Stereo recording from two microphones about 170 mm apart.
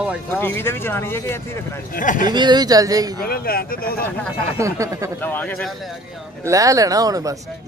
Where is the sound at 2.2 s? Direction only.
25° right (ahead or behind).